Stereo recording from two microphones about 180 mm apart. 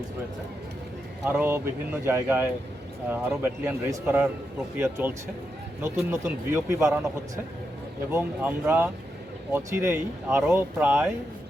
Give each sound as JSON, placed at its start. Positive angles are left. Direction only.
{"t": 1.3, "sound": "speech", "side_deg": -10}
{"t": 8.1, "sound": "speech", "side_deg": -10}